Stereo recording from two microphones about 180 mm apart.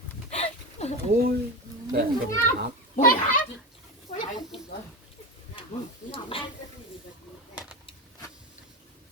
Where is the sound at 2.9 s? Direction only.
50° left (ahead or behind).